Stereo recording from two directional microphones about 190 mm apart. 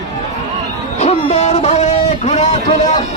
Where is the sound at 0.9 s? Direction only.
35° left (ahead or behind).